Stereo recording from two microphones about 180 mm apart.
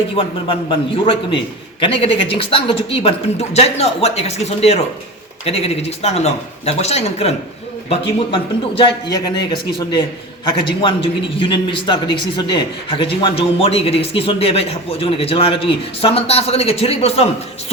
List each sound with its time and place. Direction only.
0.2 s a man's voice: 30° left (ahead or behind)